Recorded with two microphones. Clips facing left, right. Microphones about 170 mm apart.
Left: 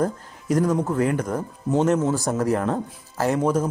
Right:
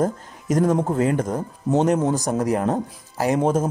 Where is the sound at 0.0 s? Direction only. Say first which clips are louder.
Right 2 dB; 20° right (ahead or behind).